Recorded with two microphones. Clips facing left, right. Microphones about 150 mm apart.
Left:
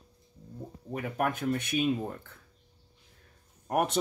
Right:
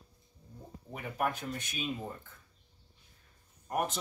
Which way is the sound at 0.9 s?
55° left (ahead or behind).